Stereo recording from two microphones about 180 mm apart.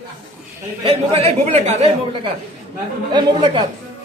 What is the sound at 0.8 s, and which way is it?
Speech, 35° right (ahead or behind).